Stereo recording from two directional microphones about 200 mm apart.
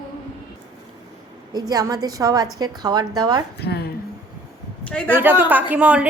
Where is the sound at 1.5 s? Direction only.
20° right (ahead or behind).